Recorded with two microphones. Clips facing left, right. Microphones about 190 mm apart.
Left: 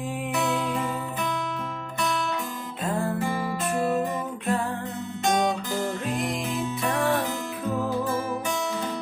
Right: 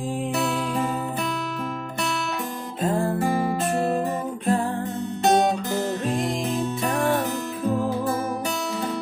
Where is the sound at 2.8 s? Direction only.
35° right (ahead or behind).